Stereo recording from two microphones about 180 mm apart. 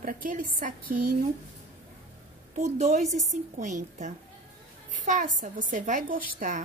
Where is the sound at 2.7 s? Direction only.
40° right (ahead or behind).